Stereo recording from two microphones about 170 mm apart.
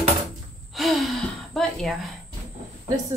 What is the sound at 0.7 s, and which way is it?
Gasp, centre (ahead or behind).